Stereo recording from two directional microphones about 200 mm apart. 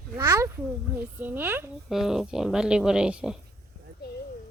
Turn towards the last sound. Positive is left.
turn(degrees=-5)  # may be behind; listen again after turning